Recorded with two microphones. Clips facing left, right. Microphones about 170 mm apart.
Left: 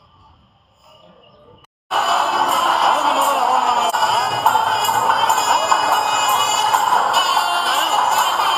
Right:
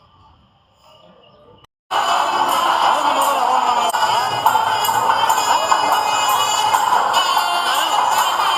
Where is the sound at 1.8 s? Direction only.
Centre (ahead or behind).